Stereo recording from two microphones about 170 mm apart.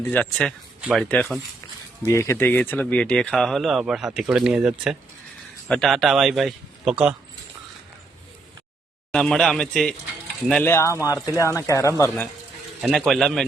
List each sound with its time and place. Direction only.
0.1 s speech: 5° left (ahead or behind)
0.8 s speech: 5° right (ahead or behind)
1.1 s speech: 10° left (ahead or behind)
9.1 s speech: 5° left (ahead or behind)
12.8 s speech: centre (ahead or behind)